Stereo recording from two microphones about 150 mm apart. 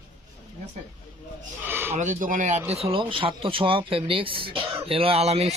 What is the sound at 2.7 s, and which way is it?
Speech, 40° right (ahead or behind).